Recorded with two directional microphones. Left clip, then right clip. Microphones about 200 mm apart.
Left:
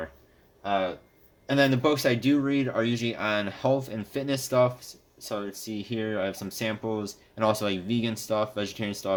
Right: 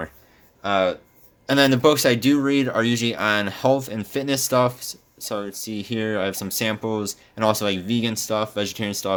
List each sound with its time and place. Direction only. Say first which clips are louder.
0.6 s speech: right 7 dB; 55° right (ahead or behind)
1.5 s speech: right 6 dB; 40° right (ahead or behind)